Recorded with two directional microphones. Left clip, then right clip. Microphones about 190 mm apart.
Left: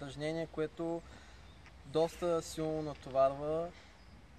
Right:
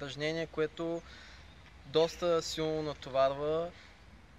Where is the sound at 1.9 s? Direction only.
25° right (ahead or behind).